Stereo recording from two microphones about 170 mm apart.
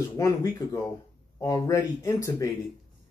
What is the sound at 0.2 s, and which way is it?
Speech, 20° left (ahead or behind).